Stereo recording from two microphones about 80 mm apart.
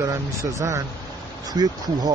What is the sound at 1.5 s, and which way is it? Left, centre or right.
Speech, right.